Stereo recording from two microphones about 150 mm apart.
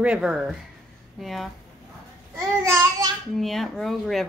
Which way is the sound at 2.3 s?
20° right (ahead or behind).